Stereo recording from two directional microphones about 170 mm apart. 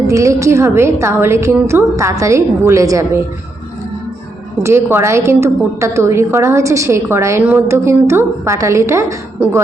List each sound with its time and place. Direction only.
0.1 s a woman's voice: 20° right (ahead or behind)
4.6 s a woman's voice: 15° right (ahead or behind)